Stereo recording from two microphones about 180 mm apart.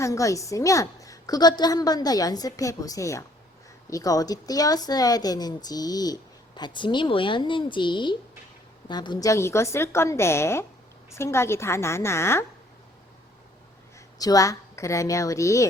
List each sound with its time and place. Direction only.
0.0 s a woman's voice: 15° left (ahead or behind)
14.2 s a woman's voice: 20° left (ahead or behind)